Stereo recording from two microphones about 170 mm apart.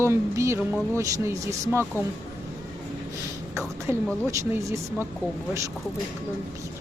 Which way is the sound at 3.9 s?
15° right (ahead or behind).